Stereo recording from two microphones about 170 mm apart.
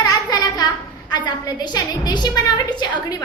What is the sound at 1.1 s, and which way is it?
A woman's voice, 25° left (ahead or behind).